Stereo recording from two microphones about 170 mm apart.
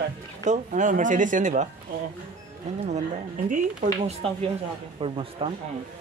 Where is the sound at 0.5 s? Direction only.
50° right (ahead or behind).